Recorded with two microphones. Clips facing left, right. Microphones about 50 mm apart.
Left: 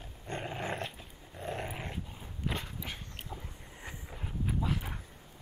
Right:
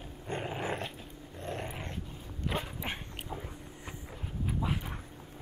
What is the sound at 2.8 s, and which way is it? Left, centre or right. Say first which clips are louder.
Dog: right 4 dB; right.